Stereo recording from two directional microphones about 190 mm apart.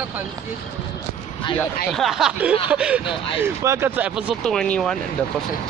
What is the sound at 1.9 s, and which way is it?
Speech, centre (ahead or behind).